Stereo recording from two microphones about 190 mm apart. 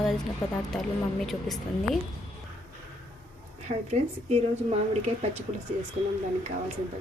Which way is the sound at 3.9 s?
35° right (ahead or behind).